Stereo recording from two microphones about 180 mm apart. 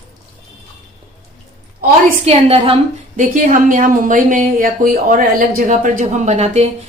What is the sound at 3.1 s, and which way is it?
Speech, 50° right (ahead or behind).